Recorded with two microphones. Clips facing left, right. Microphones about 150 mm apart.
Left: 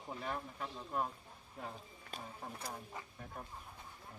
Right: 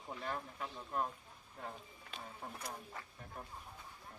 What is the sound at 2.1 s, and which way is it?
Speech, 40° left (ahead or behind).